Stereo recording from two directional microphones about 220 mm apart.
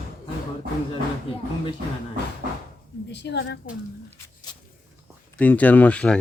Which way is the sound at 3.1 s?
50° left (ahead or behind).